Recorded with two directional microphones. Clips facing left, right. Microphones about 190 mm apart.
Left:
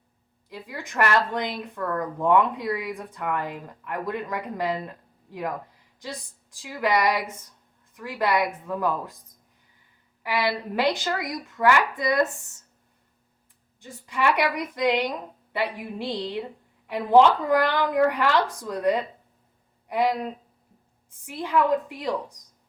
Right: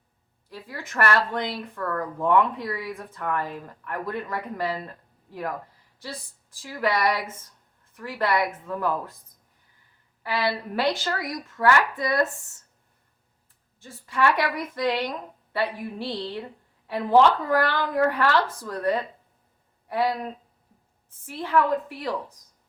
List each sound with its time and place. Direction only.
0.5 s speech: 15° left (ahead or behind)
10.2 s speech: 15° left (ahead or behind)
13.7 s speech: 15° left (ahead or behind)
21.2 s speech: 15° left (ahead or behind)